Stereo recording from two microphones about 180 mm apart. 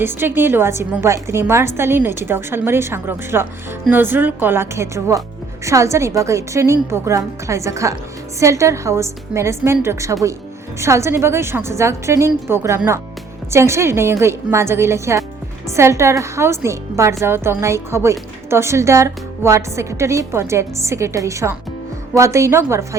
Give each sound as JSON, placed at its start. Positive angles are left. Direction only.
{"t": 0.0, "sound": "a woman's voice", "side_deg": -10}